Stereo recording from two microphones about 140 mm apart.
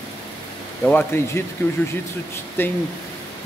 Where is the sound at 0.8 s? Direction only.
15° left (ahead or behind).